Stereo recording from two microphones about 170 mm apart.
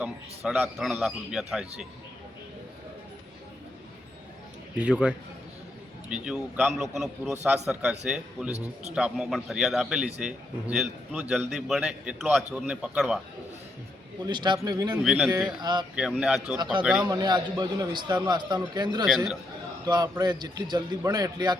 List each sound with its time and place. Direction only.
0.0 s a man's voice: 5° right (ahead or behind)
4.8 s a man's voice: 5° right (ahead or behind)
14.3 s a man's voice: 25° right (ahead or behind)
15.0 s a man's voice: centre (ahead or behind)
15.4 s a man's voice: 25° right (ahead or behind)
16.0 s a man's voice: 5° right (ahead or behind)
17.1 s a man's voice: 25° right (ahead or behind)
19.0 s a man's voice: centre (ahead or behind)
19.9 s a man's voice: 25° right (ahead or behind)